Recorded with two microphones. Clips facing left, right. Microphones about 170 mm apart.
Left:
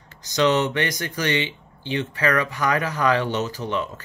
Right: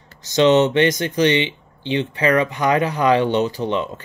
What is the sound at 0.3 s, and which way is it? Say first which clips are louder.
Speech: right 6 dB; 25° right (ahead or behind).